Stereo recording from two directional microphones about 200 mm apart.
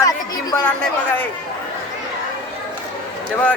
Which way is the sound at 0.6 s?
5° left (ahead or behind).